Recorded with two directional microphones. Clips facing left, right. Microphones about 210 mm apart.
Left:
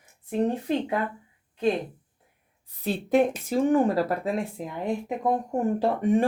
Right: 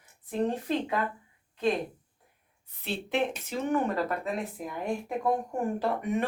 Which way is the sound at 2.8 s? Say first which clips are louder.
Left 7 dB; 40° left (ahead or behind).